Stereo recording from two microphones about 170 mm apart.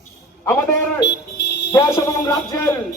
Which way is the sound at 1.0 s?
85° left.